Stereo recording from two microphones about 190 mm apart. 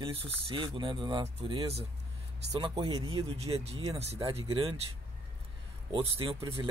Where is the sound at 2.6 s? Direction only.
20° right (ahead or behind).